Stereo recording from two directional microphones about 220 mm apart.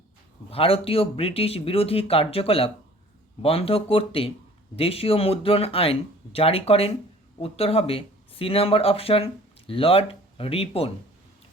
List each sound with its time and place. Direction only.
0.5 s speech: 25° left (ahead or behind)